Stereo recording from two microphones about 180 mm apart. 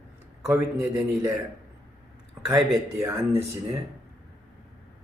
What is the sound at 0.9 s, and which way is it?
Speech, 10° right (ahead or behind).